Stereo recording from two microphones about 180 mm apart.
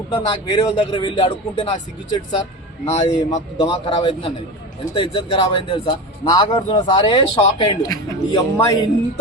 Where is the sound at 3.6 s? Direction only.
25° left (ahead or behind).